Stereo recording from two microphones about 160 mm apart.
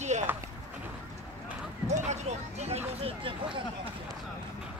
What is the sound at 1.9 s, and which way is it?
Speech, 45° right (ahead or behind).